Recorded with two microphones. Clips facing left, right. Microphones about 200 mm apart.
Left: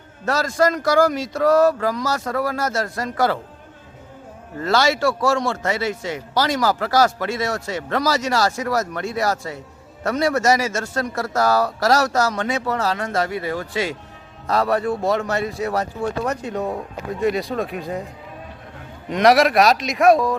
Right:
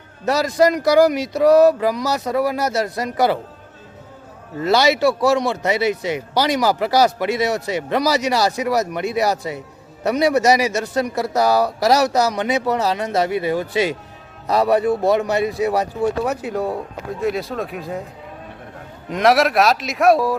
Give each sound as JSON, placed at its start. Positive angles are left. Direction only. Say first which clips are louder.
{"t": 0.3, "sound": "a man's voice", "louder": "right 3 dB", "side_deg": -15}
{"t": 4.6, "sound": "a man's voice", "louder": "right 3 dB", "side_deg": -15}
{"t": 19.0, "sound": "speech", "louder": "left 1 dB", "side_deg": 0}